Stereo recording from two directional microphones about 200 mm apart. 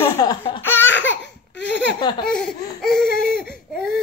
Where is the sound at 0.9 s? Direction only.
65° left (ahead or behind).